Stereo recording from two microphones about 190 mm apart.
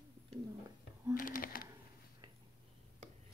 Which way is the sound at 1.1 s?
45° left (ahead or behind).